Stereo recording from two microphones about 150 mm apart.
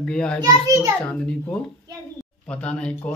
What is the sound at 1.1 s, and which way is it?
Speech, 5° left (ahead or behind).